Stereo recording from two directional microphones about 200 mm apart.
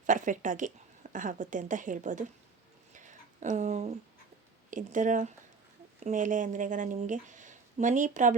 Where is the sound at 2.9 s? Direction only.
40° right (ahead or behind).